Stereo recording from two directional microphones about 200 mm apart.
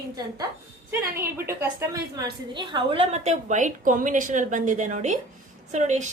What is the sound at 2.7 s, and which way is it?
A woman's voice, 25° right (ahead or behind).